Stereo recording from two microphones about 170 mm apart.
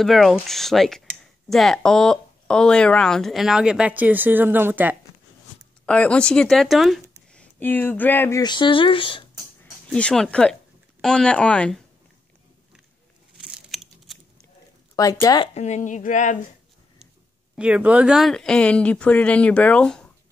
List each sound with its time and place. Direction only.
0.0 s speech: centre (ahead or behind)
5.9 s speech: 5° left (ahead or behind)
8.4 s speech: 25° left (ahead or behind)
9.8 s speech: 5° left (ahead or behind)
13.4 s a sound: 5° right (ahead or behind)
15.0 s speech: 20° left (ahead or behind)
15.5 s speech: 40° left (ahead or behind)
17.6 s speech: 5° right (ahead or behind)